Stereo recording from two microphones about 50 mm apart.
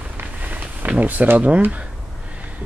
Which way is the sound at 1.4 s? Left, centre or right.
Right.